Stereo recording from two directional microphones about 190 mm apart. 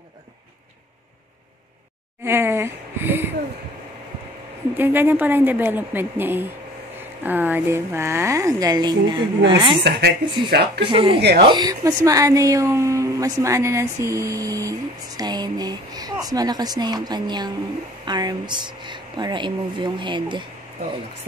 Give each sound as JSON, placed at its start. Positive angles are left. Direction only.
{"t": 2.2, "sound": "a sound", "side_deg": -15}
{"t": 4.7, "sound": "speech", "side_deg": -10}
{"t": 9.8, "sound": "speech", "side_deg": -60}
{"t": 10.9, "sound": "speech", "side_deg": -25}
{"t": 11.1, "sound": "speech", "side_deg": -60}
{"t": 11.4, "sound": "a woman's voice", "side_deg": -20}